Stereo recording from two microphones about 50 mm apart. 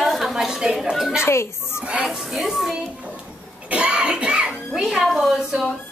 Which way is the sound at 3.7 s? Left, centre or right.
Right.